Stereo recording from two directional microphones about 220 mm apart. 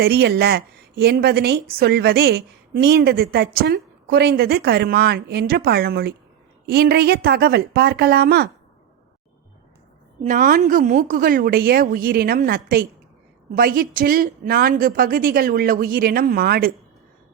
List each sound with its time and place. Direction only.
0.0 s a woman's voice: 45° right (ahead or behind)
10.2 s speech: 40° right (ahead or behind)